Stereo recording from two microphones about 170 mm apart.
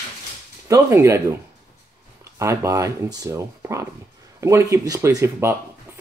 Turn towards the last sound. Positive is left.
turn(degrees=-15)  # may be behind; listen again after turning